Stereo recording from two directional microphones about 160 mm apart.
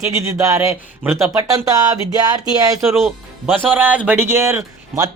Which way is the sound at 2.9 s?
Centre (ahead or behind).